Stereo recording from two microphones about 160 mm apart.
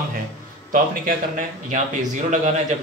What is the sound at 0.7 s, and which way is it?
Speech, 55° right (ahead or behind).